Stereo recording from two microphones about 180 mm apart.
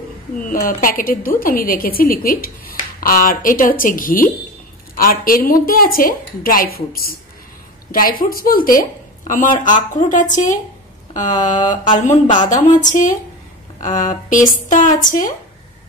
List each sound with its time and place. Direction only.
0.4 s a woman's voice: 50° left (ahead or behind)
11.7 s a woman's voice: 45° left (ahead or behind)